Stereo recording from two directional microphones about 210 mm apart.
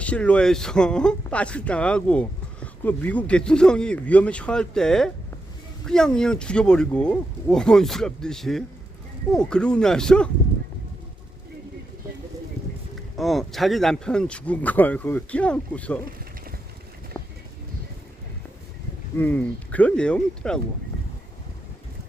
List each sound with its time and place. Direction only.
0.0 s speech: 5° left (ahead or behind)
13.1 s speech: centre (ahead or behind)
17.2 s a sound: 10° left (ahead or behind)
19.1 s speech: 10° left (ahead or behind)